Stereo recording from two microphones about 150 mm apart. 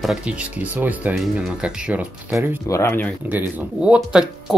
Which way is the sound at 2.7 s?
15° left (ahead or behind).